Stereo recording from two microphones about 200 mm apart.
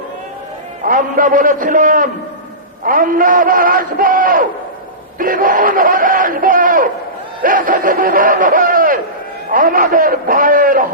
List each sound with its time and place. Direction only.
0.9 s speech: 40° right (ahead or behind)